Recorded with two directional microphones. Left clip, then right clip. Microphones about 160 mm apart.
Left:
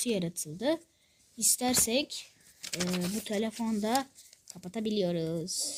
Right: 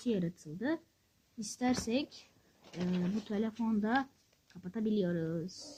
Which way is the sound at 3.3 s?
15° left (ahead or behind).